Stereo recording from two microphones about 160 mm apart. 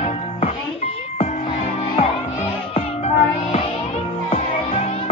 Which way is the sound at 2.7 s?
40° left (ahead or behind).